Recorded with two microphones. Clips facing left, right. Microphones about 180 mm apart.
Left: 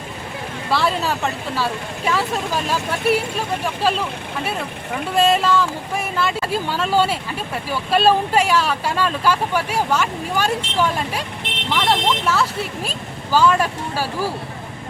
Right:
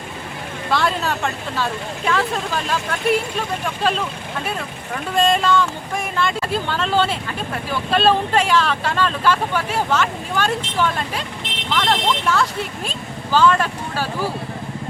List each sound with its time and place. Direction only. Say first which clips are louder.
0.7 s speech: even; 5° left (ahead or behind)
5.1 s speech: even; 5° left (ahead or behind)